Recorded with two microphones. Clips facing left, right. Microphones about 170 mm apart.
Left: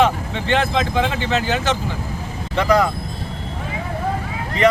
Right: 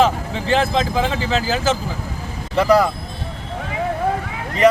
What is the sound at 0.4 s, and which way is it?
Speech, 35° right (ahead or behind).